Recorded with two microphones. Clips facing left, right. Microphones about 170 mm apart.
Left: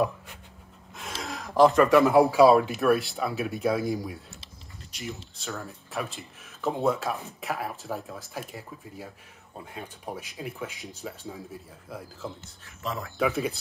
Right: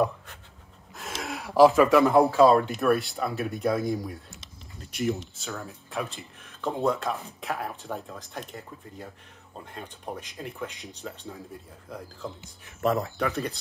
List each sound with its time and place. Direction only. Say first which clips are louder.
0.9 s speech: right 1 dB; centre (ahead or behind)
4.9 s speech: right 10 dB; 55° right (ahead or behind)
5.3 s speech: even; centre (ahead or behind)
13.2 s speech: left 2 dB; 5° left (ahead or behind)